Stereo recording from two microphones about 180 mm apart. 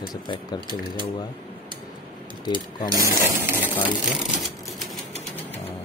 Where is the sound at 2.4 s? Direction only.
25° left (ahead or behind).